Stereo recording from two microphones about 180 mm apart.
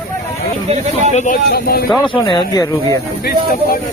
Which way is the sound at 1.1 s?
45° left (ahead or behind).